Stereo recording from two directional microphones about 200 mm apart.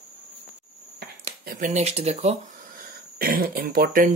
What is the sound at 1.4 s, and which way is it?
Speech, 45° right (ahead or behind).